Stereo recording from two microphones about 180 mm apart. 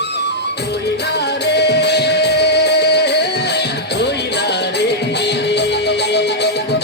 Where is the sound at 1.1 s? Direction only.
65° left (ahead or behind).